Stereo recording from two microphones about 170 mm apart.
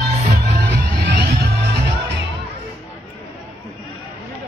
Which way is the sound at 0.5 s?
70° right (ahead or behind).